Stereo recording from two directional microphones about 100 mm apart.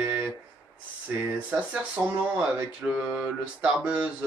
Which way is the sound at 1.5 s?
15° right (ahead or behind).